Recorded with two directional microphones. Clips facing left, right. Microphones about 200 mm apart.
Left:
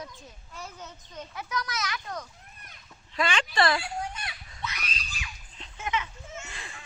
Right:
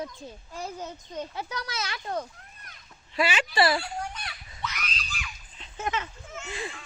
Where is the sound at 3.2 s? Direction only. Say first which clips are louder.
Right 2 dB; 5° right (ahead or behind).